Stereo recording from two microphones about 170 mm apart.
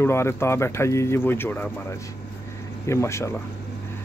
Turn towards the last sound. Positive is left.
turn(degrees=15)  # may be behind; listen again after turning